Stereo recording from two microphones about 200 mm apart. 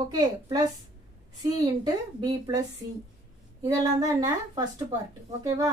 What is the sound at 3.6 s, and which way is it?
A woman's voice, 15° right (ahead or behind).